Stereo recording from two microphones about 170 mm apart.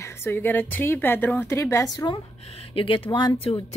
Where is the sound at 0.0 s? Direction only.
15° left (ahead or behind).